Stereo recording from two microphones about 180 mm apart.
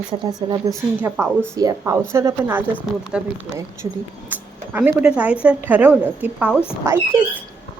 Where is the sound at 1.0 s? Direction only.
10° right (ahead or behind).